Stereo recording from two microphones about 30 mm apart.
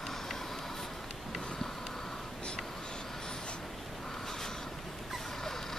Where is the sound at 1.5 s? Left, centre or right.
Centre.